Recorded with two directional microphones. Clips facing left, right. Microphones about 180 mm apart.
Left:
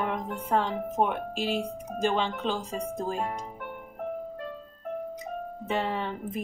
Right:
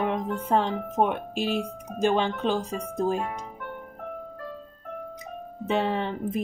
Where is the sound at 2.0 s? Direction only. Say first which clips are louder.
Right 4 dB; 15° right (ahead or behind).